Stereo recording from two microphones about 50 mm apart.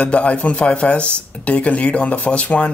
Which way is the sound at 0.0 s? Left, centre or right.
Left.